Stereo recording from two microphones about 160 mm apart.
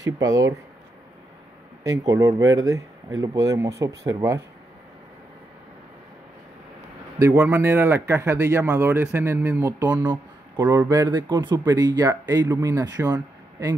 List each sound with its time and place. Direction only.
0.0 s speech: 20° right (ahead or behind)
1.8 s speech: 20° right (ahead or behind)
7.2 s speech: 15° right (ahead or behind)
10.6 s speech: 10° right (ahead or behind)